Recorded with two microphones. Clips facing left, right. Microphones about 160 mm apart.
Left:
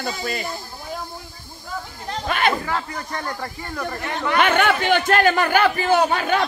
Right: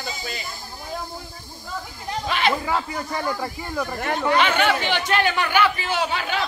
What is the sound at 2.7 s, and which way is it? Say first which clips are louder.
Speech: right 2 dB; 5° right (ahead or behind).